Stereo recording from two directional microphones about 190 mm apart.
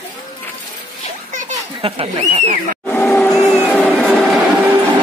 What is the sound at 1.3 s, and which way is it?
Children playing, 40° right (ahead or behind).